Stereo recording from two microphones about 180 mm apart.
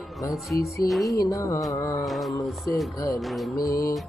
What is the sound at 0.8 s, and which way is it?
Music, centre (ahead or behind).